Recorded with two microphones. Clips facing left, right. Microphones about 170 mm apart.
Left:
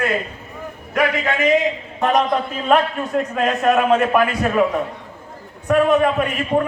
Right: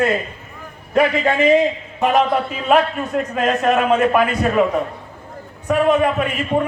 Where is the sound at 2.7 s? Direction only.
Centre (ahead or behind).